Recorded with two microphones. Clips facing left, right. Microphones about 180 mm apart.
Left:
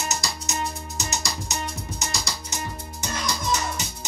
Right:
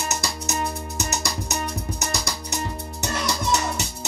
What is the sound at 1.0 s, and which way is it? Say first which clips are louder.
Music: right 2 dB; 60° right (ahead or behind).